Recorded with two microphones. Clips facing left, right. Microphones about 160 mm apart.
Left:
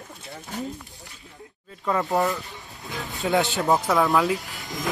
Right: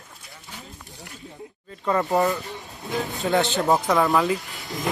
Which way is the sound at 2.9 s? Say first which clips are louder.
Right 7 dB; 20° right (ahead or behind).